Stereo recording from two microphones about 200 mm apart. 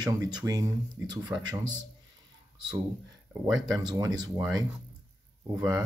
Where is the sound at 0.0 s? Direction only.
20° right (ahead or behind).